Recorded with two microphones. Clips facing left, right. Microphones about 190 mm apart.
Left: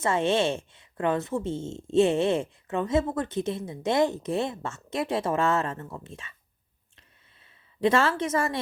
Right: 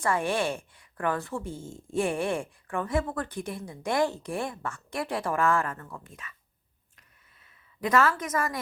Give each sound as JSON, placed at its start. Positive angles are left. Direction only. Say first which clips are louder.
{"t": 0.0, "sound": "a woman's voice", "louder": "left 3 dB", "side_deg": 25}
{"t": 7.8, "sound": "a woman's voice", "louder": "left 2 dB", "side_deg": 25}